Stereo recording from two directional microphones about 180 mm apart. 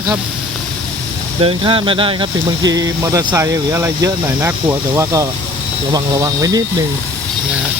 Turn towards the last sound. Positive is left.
turn(degrees=-20)  # may be behind; listen again after turning